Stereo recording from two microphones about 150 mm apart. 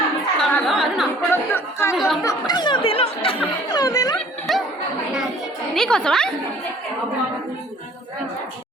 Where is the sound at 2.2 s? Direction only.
25° left (ahead or behind).